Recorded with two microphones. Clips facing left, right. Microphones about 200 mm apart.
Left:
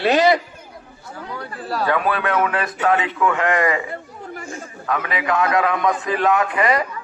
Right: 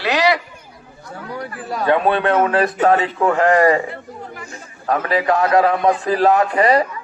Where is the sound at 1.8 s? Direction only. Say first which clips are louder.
Right 5 dB; 25° right (ahead or behind).